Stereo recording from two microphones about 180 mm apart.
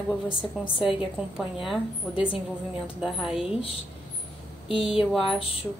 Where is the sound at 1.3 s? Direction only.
Centre (ahead or behind).